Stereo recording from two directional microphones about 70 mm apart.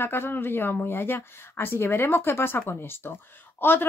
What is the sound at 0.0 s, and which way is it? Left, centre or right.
A woman's voice, left.